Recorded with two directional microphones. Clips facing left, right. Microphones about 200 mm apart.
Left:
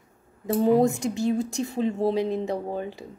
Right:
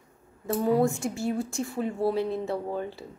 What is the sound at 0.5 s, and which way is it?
A woman's voice, 20° left (ahead or behind).